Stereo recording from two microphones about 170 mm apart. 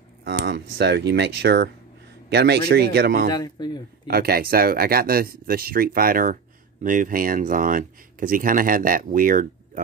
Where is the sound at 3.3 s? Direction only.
25° left (ahead or behind).